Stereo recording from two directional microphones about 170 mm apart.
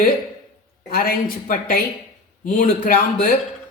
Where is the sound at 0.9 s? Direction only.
60° left (ahead or behind).